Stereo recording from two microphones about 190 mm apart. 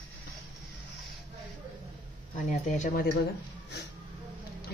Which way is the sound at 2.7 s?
40° left (ahead or behind).